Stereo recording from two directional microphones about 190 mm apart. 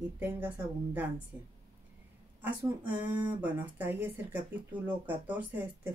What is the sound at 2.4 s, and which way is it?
Speech, 10° right (ahead or behind).